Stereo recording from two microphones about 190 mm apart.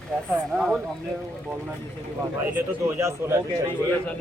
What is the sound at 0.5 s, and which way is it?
Speech, centre (ahead or behind).